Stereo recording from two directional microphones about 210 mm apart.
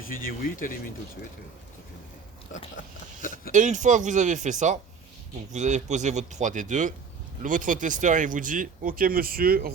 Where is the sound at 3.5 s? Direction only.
35° right (ahead or behind).